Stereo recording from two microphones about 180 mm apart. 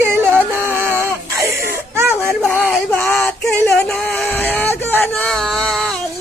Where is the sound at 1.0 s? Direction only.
15° right (ahead or behind).